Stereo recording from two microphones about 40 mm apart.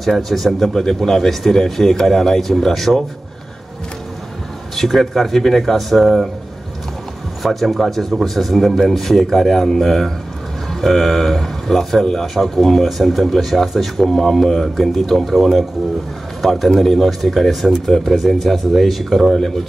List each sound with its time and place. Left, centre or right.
0.1 s speech: centre
4.7 s speech: centre
7.4 s speech: centre
16.7 s speech: centre